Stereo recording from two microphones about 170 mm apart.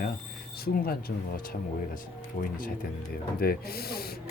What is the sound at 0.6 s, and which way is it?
Speech, 60° left (ahead or behind).